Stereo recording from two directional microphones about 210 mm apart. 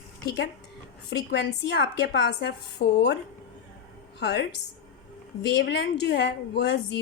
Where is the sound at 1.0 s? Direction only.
55° left (ahead or behind).